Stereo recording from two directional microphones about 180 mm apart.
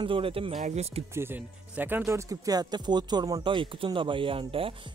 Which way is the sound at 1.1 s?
10° right (ahead or behind).